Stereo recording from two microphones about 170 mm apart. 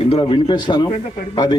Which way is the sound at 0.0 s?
35° left (ahead or behind).